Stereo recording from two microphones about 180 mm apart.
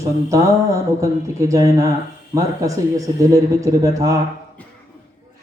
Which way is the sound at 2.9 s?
20° right (ahead or behind).